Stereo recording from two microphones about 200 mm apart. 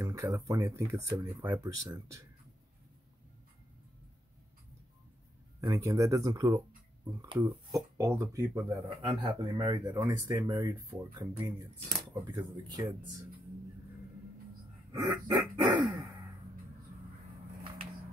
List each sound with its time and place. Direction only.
0.0 s speech: 15° right (ahead or behind)
5.7 s speech: 15° right (ahead or behind)
14.9 s a sound: 15° right (ahead or behind)